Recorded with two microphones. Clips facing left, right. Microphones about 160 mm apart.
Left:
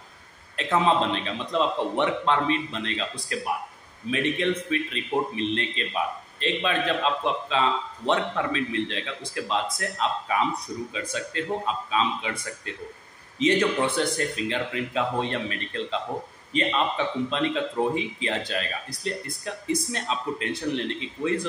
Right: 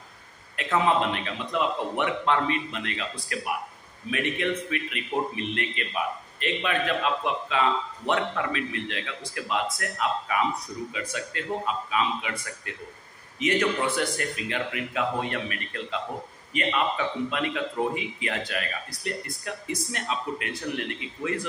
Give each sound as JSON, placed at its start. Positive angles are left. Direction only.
{"t": 0.8, "sound": "a man's voice", "side_deg": 25}
{"t": 4.4, "sound": "a man's voice", "side_deg": 25}